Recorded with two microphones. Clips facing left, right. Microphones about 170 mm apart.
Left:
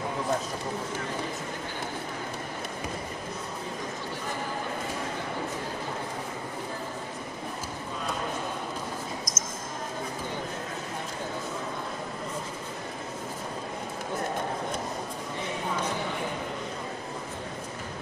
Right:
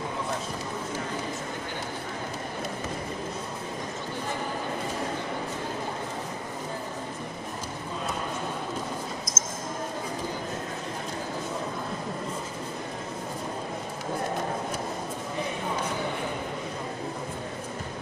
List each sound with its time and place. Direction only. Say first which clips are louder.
9.3 s basketball bounce: right 1 dB; 30° right (ahead or behind)